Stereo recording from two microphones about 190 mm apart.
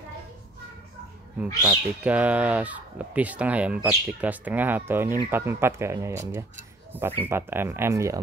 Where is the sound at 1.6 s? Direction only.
10° right (ahead or behind).